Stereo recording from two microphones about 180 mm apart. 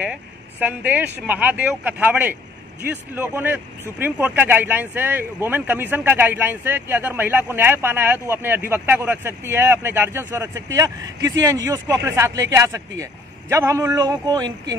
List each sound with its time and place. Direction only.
0.0 s speech: 10° right (ahead or behind)